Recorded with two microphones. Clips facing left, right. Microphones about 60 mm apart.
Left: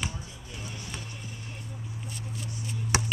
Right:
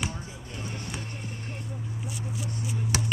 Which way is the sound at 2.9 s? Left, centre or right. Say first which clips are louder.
Left 3 dB; left.